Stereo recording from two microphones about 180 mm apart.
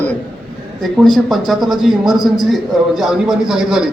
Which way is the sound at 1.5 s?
Centre (ahead or behind).